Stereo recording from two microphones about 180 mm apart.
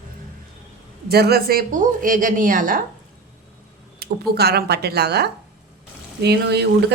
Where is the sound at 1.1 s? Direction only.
60° right (ahead or behind).